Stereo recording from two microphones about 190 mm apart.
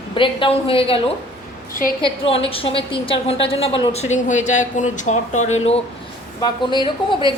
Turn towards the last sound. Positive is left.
turn(degrees=25)  # may be behind; listen again after turning